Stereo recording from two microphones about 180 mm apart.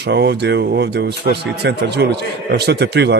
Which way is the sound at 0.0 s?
70° right (ahead or behind).